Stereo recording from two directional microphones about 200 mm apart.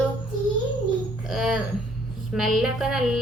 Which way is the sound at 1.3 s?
Centre (ahead or behind).